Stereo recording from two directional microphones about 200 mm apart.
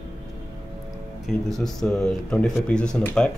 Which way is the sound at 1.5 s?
Centre (ahead or behind).